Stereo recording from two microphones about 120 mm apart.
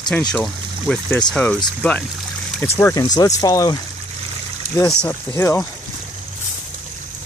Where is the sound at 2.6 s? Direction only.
20° left (ahead or behind).